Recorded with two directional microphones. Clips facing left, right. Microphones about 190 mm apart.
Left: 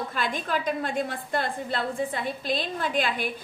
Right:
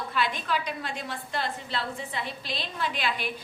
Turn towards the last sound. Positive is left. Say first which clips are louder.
# left 4 dB
turn(degrees=50)  # may be behind; listen again after turning